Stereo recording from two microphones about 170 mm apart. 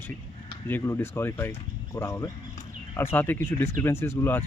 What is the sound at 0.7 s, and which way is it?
Speech, 15° left (ahead or behind).